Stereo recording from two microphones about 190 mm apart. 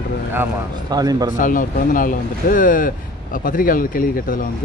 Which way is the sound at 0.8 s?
20° right (ahead or behind).